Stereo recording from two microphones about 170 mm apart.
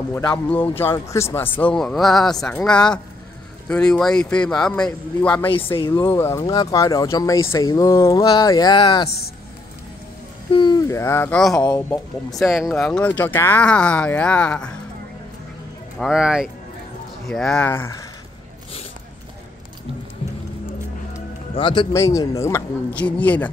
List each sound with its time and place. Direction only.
0.3 s a man's voice: 10° left (ahead or behind)
5.8 s speech: 25° left (ahead or behind)
10.5 s speech: 25° left (ahead or behind)
11.3 s a man's voice: 5° left (ahead or behind)
11.7 s speech: 15° left (ahead or behind)
12.4 s a man's voice: centre (ahead or behind)
16.0 s a man's voice: 5° right (ahead or behind)
17.6 s speech: 15° left (ahead or behind)
21.5 s speech: 30° left (ahead or behind)
21.9 s speech: 20° left (ahead or behind)